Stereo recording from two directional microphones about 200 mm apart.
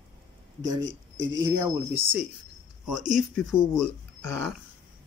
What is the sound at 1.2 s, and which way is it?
Speech, 15° right (ahead or behind).